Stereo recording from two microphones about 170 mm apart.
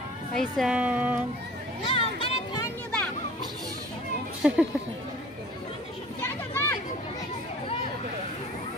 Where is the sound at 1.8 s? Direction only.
30° left (ahead or behind).